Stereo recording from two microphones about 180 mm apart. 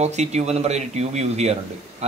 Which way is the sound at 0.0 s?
40° right (ahead or behind).